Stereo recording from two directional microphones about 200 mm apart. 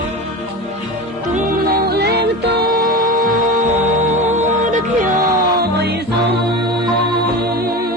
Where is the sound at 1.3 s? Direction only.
45° right (ahead or behind).